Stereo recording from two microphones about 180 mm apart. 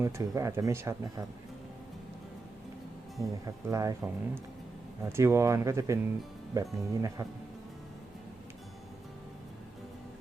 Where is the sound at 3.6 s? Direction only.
20° right (ahead or behind).